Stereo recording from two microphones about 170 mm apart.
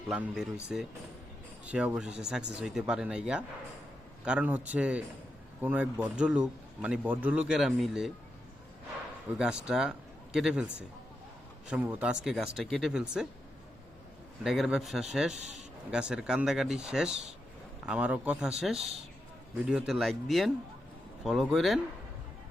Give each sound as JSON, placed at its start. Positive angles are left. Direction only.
{"t": 0.1, "sound": "a man's voice", "side_deg": -5}
{"t": 9.4, "sound": "a man's voice", "side_deg": -5}
{"t": 14.4, "sound": "speech", "side_deg": 0}
{"t": 17.1, "sound": "speech", "side_deg": -40}
{"t": 17.8, "sound": "speech", "side_deg": -10}